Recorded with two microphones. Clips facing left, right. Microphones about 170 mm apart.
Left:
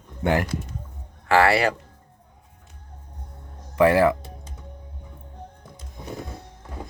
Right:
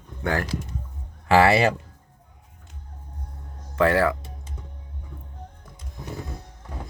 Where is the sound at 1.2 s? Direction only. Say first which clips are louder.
Right 1 dB; 20° right (ahead or behind).